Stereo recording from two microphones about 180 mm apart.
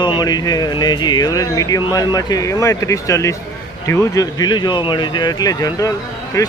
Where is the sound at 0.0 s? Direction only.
25° left (ahead or behind).